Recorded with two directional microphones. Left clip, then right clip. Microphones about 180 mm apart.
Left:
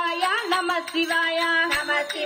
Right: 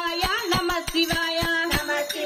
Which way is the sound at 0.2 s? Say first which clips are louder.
Right 1 dB; 35° right (ahead or behind).